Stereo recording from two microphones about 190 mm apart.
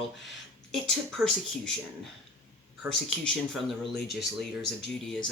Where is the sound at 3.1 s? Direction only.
Centre (ahead or behind).